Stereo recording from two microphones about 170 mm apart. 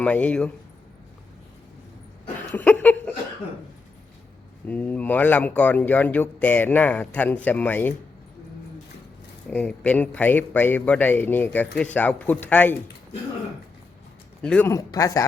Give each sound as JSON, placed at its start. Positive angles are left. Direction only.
{"t": 0.0, "sound": "speech", "side_deg": 10}
{"t": 2.5, "sound": "a sound", "side_deg": 10}
{"t": 4.6, "sound": "speech", "side_deg": 10}
{"t": 9.5, "sound": "speech", "side_deg": 5}
{"t": 14.4, "sound": "speech", "side_deg": 5}
{"t": 14.7, "sound": "speech", "side_deg": 20}